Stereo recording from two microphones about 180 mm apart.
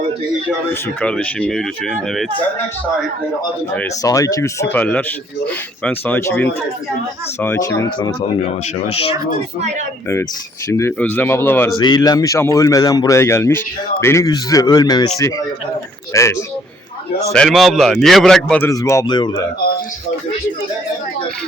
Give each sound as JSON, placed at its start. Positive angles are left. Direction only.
{"t": 0.7, "sound": "speech", "side_deg": 5}
{"t": 4.0, "sound": "speech", "side_deg": 20}
{"t": 10.7, "sound": "speech", "side_deg": 15}
{"t": 11.8, "sound": "speech", "side_deg": 25}
{"t": 16.1, "sound": "speech", "side_deg": 15}
{"t": 17.3, "sound": "speech", "side_deg": 0}
{"t": 18.7, "sound": "speech", "side_deg": 20}